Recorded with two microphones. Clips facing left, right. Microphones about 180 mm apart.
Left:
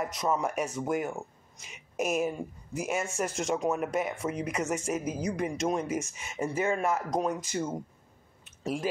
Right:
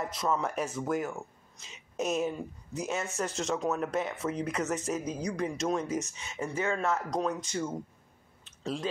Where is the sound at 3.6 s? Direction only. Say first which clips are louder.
Left 1 dB; 10° left (ahead or behind).